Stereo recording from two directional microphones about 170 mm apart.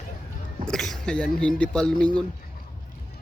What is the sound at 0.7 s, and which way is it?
Speech, 5° left (ahead or behind).